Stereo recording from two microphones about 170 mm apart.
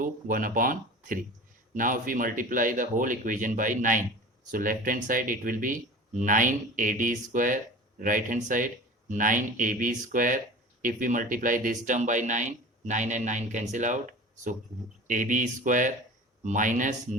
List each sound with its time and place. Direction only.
0.0 s speech: 55° right (ahead or behind)